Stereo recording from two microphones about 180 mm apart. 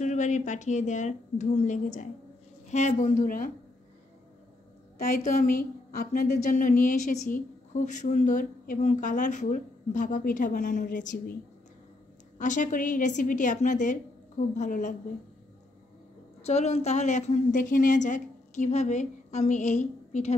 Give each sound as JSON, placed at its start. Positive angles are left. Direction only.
{"t": 0.0, "sound": "a woman's voice", "side_deg": 40}
{"t": 4.9, "sound": "a woman's voice", "side_deg": 55}
{"t": 12.4, "sound": "a woman's voice", "side_deg": 45}
{"t": 16.4, "sound": "a woman's voice", "side_deg": 35}